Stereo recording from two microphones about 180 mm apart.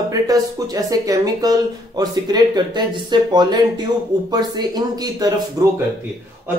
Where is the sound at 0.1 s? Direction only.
20° right (ahead or behind).